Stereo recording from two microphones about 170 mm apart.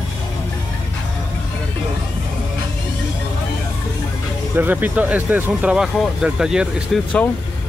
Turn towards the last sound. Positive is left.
turn(degrees=0)  # may be behind; listen again after turning